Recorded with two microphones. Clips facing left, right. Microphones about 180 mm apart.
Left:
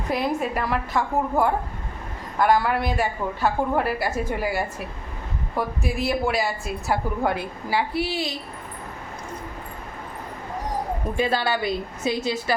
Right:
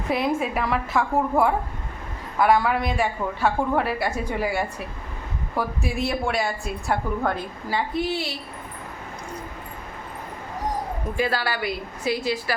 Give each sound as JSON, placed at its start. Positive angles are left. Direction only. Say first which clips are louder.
{"t": 0.1, "sound": "a woman's voice", "louder": "right 1 dB", "side_deg": 0}
{"t": 11.2, "sound": "a woman's voice", "louder": "left 2 dB", "side_deg": 20}